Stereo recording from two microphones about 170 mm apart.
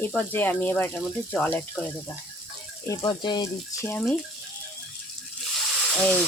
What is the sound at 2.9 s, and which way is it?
Speech, 25° left (ahead or behind).